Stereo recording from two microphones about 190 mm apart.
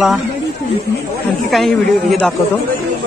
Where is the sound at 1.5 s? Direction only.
Centre (ahead or behind).